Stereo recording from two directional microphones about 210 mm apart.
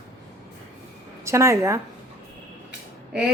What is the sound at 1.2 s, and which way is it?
Speech, 15° right (ahead or behind).